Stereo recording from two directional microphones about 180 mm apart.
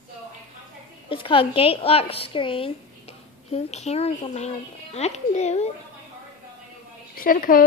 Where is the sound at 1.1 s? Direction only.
30° left (ahead or behind).